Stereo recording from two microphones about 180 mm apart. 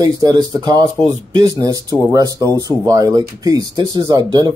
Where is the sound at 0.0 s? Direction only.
20° right (ahead or behind).